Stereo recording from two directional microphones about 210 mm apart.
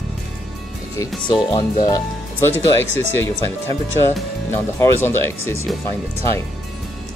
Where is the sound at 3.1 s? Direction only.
10° left (ahead or behind).